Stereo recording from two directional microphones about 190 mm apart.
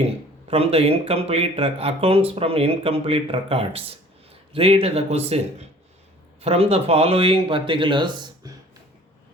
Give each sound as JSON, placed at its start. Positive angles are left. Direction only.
{"t": 0.0, "sound": "a man's voice", "side_deg": -30}